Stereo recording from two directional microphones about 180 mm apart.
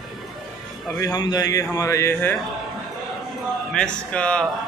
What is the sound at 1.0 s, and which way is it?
Speech, 20° left (ahead or behind).